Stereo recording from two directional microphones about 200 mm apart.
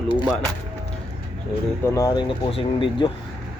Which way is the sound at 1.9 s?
15° left (ahead or behind).